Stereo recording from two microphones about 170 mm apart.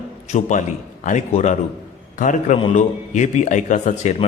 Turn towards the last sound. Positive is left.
turn(degrees=45)  # may be behind; listen again after turning